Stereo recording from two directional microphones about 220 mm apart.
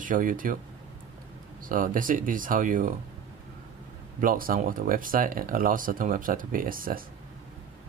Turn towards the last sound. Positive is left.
turn(degrees=-40)  # may be behind; listen again after turning